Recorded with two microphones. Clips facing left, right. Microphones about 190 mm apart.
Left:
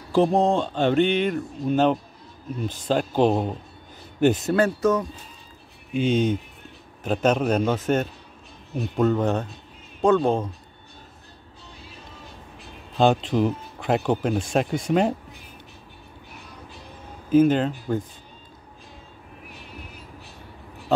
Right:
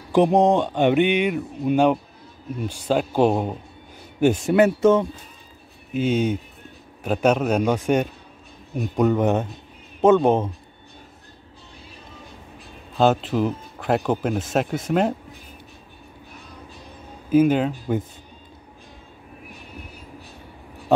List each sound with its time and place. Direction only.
0.1 s speech: 20° right (ahead or behind)
5.9 s speech: 10° right (ahead or behind)
12.9 s speech: 5° right (ahead or behind)
17.3 s speech: 10° right (ahead or behind)